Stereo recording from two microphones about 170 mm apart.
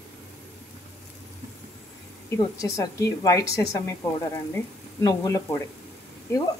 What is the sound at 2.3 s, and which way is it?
A woman's voice, 20° left (ahead or behind).